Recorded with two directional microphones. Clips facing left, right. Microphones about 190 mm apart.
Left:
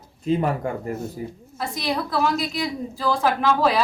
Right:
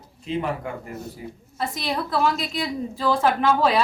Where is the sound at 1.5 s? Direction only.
Centre (ahead or behind).